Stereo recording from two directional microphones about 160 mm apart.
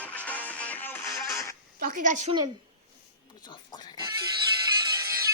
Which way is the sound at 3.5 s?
25° left (ahead or behind).